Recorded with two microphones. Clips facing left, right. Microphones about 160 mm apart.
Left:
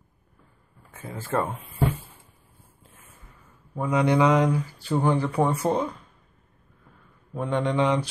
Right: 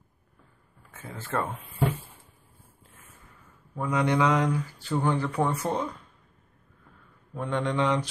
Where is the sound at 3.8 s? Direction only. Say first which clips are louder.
Left 3 dB; 10° left (ahead or behind).